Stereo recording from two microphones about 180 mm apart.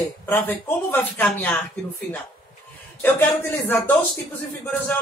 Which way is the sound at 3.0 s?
10° left (ahead or behind).